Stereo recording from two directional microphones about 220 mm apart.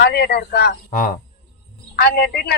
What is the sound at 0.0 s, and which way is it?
Speech, 45° left (ahead or behind).